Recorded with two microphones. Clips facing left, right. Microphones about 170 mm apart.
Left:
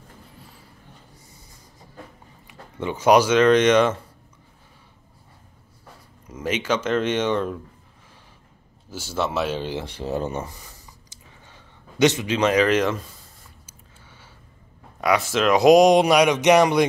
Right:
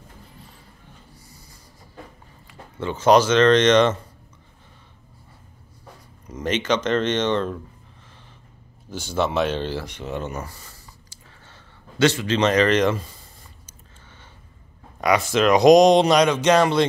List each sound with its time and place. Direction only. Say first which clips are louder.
2.4 s speech: even; 15° left (ahead or behind)
6.2 s speech: right 1 dB; 5° left (ahead or behind)
8.9 s speech: right 2 dB; 5° left (ahead or behind)
9.8 s speech: left 3 dB; 30° left (ahead or behind)
10.4 s a sound: left 1 dB; 15° left (ahead or behind)
12.4 s a sound: right 1 dB; 5° left (ahead or behind)
15.0 s speech: right 2 dB; centre (ahead or behind)